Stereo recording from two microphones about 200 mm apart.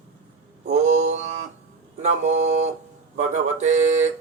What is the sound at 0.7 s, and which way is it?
Speech, 35° right (ahead or behind).